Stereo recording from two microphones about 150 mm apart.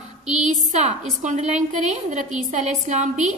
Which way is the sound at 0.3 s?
55° right (ahead or behind).